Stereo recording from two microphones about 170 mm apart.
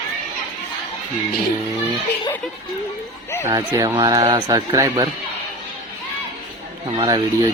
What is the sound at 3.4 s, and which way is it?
Speech, 20° right (ahead or behind).